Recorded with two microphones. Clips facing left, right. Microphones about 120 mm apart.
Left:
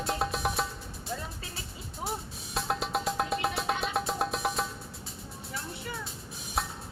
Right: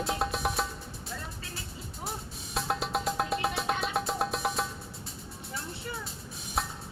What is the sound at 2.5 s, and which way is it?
Music, centre (ahead or behind).